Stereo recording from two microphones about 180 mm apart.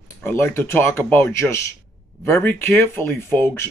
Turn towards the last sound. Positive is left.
turn(degrees=10)  # may be behind; listen again after turning